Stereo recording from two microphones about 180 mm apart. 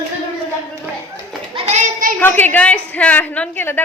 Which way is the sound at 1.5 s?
40° right (ahead or behind).